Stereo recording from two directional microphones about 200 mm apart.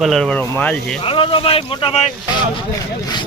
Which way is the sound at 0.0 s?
Centre (ahead or behind).